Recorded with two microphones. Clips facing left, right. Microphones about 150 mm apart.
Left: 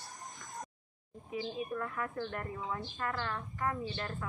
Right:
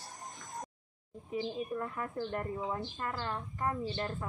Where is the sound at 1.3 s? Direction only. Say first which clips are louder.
Right 2 dB; 30° right (ahead or behind).